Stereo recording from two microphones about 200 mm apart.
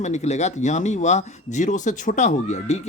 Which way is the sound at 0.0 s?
35° left (ahead or behind).